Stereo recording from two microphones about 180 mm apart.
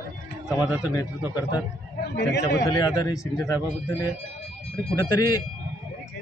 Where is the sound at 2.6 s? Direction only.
20° left (ahead or behind).